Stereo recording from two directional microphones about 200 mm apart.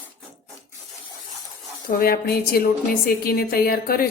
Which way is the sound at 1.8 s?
50° left (ahead or behind).